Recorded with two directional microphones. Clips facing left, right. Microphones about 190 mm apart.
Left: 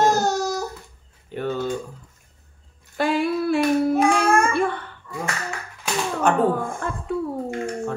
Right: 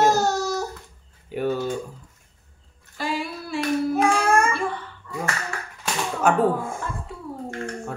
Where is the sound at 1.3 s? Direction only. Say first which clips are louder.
Right 1 dB; 10° right (ahead or behind).